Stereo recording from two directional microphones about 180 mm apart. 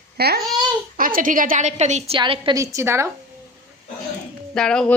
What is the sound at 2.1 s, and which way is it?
Speech, 30° right (ahead or behind).